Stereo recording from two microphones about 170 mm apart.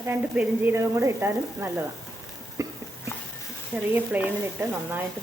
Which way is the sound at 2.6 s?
15° right (ahead or behind).